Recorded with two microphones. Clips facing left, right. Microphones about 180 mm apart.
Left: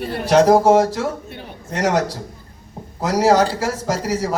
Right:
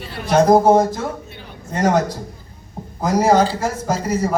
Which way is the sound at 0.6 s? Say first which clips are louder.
Even; 80° left.